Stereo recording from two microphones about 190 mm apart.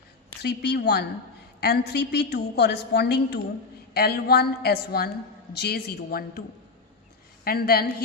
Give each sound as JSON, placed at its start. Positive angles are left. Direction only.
{"t": 0.4, "sound": "a woman's voice", "side_deg": 55}
{"t": 7.4, "sound": "a woman's voice", "side_deg": 55}